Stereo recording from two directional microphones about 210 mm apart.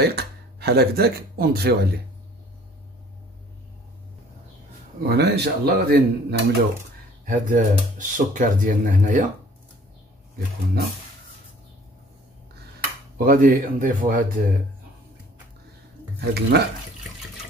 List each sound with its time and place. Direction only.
0.0 s speech: 50° right (ahead or behind)
5.0 s speech: 50° right (ahead or behind)
7.2 s speech: 40° right (ahead or behind)
10.3 s speech: 50° right (ahead or behind)
13.2 s speech: 40° right (ahead or behind)
16.2 s speech: 50° right (ahead or behind)